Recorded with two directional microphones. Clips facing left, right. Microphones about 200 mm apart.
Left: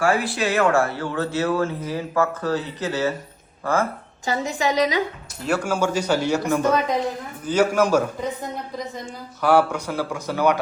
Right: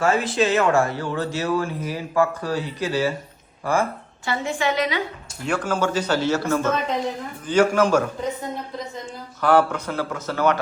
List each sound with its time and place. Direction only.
0.0 s a man's voice: 20° right (ahead or behind)
4.3 s a woman's voice: 40° left (ahead or behind)
5.5 s speech: 10° left (ahead or behind)
9.4 s speech: 10° left (ahead or behind)